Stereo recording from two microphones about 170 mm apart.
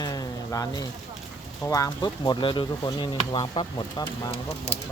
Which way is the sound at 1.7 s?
20° left (ahead or behind).